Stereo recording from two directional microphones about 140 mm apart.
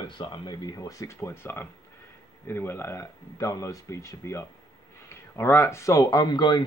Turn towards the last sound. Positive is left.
turn(degrees=30)  # may be behind; listen again after turning